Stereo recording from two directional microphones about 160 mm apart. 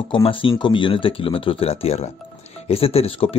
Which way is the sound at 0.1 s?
35° left (ahead or behind).